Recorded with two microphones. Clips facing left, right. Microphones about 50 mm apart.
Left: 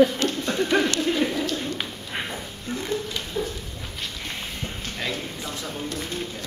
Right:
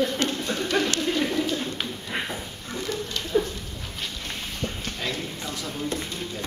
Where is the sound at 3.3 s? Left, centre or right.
Centre.